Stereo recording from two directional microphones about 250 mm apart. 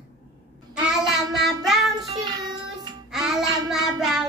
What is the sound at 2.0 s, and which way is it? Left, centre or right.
Music, centre.